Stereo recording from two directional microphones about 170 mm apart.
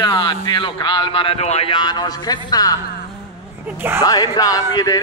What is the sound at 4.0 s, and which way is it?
Speech, 20° left (ahead or behind).